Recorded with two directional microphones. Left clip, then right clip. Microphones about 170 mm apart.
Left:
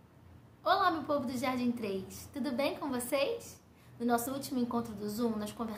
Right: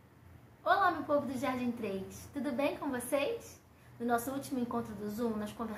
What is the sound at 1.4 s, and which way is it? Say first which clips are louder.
A woman's voice: left 1 dB; 15° left (ahead or behind).